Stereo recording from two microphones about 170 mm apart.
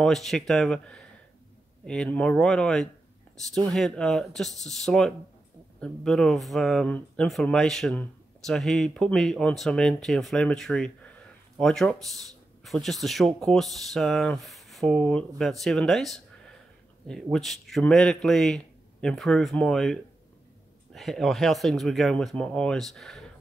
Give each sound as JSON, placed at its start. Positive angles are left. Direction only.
{"t": 0.0, "sound": "speech", "side_deg": 0}